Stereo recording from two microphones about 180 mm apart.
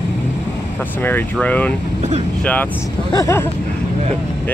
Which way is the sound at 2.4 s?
10° left (ahead or behind).